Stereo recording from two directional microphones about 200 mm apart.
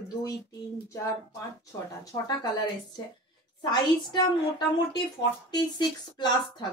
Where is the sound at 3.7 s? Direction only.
20° left (ahead or behind).